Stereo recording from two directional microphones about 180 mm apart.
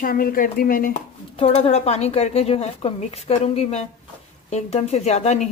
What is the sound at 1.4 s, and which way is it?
Speech, 35° left (ahead or behind).